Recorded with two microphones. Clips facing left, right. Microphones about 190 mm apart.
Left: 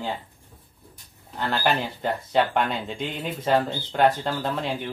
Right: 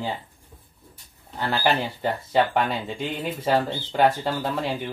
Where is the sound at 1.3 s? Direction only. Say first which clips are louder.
Right 1 dB; 5° right (ahead or behind).